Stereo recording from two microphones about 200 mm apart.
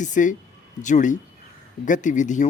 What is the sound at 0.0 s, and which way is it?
Speech, 40° left (ahead or behind).